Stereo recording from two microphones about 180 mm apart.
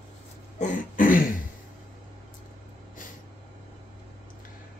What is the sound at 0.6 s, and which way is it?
Throat clearing, 45° left (ahead or behind).